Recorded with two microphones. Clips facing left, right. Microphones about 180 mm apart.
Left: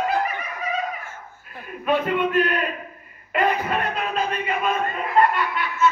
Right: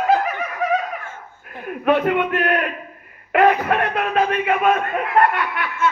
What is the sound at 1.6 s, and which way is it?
Speech, 60° right (ahead or behind).